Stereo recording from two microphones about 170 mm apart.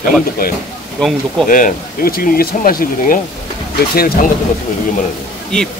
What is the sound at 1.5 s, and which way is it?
Speech, 55° left (ahead or behind).